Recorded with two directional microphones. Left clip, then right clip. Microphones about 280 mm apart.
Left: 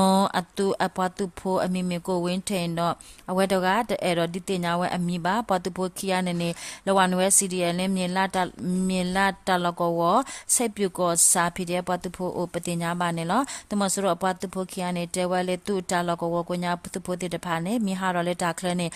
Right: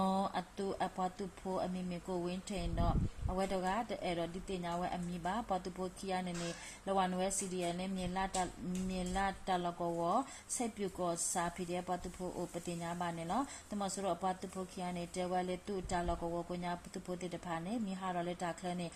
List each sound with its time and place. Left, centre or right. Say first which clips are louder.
0.0 s speech: left 14 dB; left